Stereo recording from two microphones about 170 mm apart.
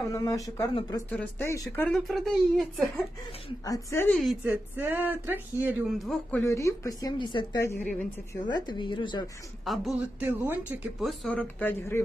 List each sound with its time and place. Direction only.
0.1 s a woman's voice: 20° left (ahead or behind)
1.9 s speech: centre (ahead or behind)
3.6 s speech: 15° left (ahead or behind)
4.1 s speech: centre (ahead or behind)
4.5 s speech: 10° right (ahead or behind)
5.9 s speech: centre (ahead or behind)
6.4 s a woman's voice: 15° left (ahead or behind)
7.6 s speech: 10° left (ahead or behind)
8.5 s a woman's voice: 25° left (ahead or behind)
9.7 s speech: centre (ahead or behind)
10.2 s speech: 10° right (ahead or behind); by 12.0 s 10° left (ahead or behind)